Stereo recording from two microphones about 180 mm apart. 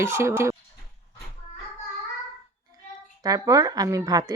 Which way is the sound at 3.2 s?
20° right (ahead or behind).